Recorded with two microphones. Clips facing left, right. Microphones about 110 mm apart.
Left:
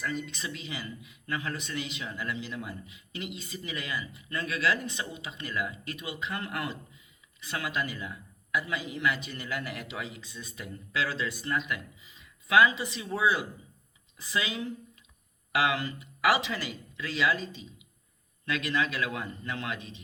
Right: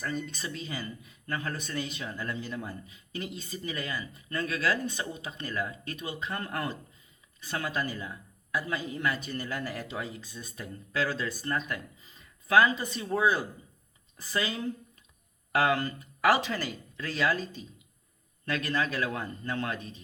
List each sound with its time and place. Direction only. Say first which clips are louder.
0.0 s speech: even; 40° right (ahead or behind)